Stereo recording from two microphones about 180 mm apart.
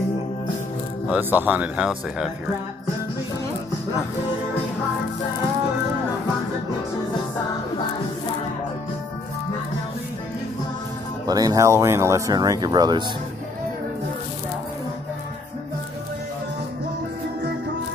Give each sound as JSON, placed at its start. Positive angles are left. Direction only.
{"t": 1.1, "sound": "speech", "side_deg": -10}
{"t": 11.2, "sound": "speech", "side_deg": -20}